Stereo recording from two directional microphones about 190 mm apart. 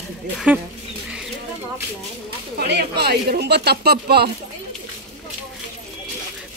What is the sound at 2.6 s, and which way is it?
Speech, 60° right (ahead or behind).